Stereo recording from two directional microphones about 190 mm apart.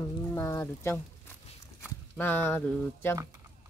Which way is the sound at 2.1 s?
10° left (ahead or behind).